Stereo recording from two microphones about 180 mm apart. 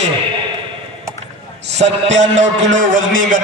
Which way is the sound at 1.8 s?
40° right (ahead or behind).